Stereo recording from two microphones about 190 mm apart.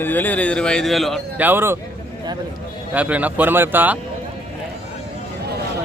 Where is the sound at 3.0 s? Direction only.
5° right (ahead or behind).